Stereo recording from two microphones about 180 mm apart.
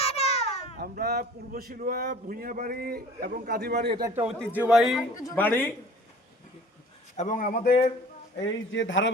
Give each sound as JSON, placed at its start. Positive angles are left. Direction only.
{"t": 0.0, "sound": "a sound", "side_deg": 35}
{"t": 0.8, "sound": "speech", "side_deg": -60}
{"t": 3.8, "sound": "a man's voice", "side_deg": -25}
{"t": 4.2, "sound": "a man's voice", "side_deg": -5}
{"t": 5.2, "sound": "speech", "side_deg": 15}
{"t": 7.2, "sound": "a man's voice", "side_deg": 45}
{"t": 8.4, "sound": "a man's voice", "side_deg": 90}